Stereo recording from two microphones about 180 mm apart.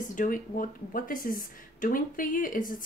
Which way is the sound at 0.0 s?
45° left (ahead or behind).